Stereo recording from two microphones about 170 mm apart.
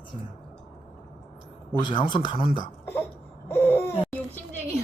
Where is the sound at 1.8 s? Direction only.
30° left (ahead or behind).